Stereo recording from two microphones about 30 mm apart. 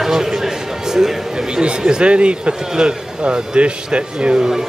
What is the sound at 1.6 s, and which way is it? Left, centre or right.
Speech, right.